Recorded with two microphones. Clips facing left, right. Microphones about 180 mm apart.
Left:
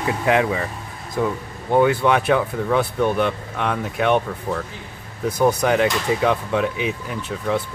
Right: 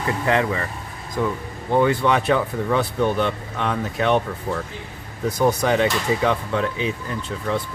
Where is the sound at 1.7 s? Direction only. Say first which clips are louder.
Left 2 dB; 5° left (ahead or behind).